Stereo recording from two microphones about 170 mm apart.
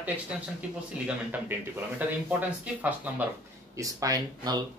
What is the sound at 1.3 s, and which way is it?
Speech, 10° right (ahead or behind).